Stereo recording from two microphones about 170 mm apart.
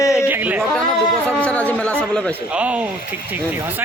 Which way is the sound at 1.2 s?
5° left (ahead or behind).